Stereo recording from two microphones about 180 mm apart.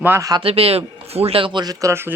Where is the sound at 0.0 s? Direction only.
15° right (ahead or behind).